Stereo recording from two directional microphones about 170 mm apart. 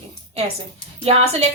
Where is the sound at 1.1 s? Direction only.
35° right (ahead or behind).